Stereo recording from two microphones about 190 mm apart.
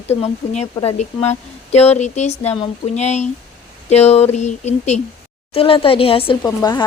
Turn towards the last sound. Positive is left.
turn(degrees=20)  # may be behind; listen again after turning